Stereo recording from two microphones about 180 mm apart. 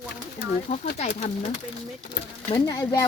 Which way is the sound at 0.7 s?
40° left (ahead or behind).